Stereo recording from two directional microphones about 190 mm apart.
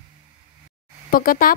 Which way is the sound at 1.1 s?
50° left (ahead or behind).